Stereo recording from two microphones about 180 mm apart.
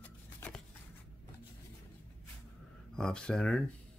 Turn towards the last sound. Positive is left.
turn(degrees=5)  # may be behind; listen again after turning